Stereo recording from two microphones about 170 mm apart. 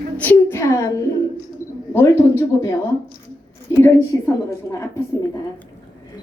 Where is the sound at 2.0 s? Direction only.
15° left (ahead or behind).